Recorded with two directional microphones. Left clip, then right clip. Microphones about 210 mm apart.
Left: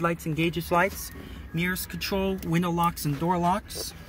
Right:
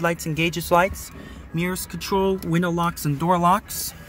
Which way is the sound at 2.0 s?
10° right (ahead or behind).